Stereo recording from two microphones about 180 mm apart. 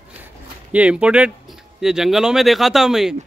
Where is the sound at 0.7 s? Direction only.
5° right (ahead or behind).